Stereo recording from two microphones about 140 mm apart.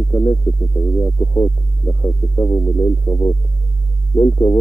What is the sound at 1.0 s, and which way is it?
Music, 20° left (ahead or behind).